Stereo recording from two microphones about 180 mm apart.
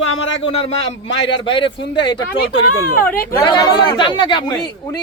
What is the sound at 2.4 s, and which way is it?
Speech, 60° left (ahead or behind).